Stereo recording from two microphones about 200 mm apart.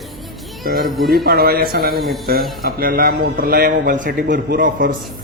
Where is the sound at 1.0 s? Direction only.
50° right (ahead or behind).